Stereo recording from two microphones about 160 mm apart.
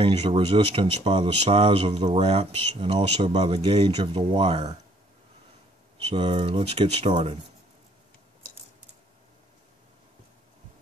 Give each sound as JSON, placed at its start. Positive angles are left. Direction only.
{"t": 0.0, "sound": "speech", "side_deg": -40}
{"t": 6.0, "sound": "speech", "side_deg": -35}